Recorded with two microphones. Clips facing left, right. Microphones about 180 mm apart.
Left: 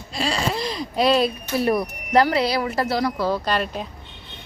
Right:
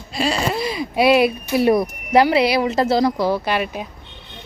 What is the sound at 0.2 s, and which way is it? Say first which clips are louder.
Speech: right 3 dB; 5° right (ahead or behind).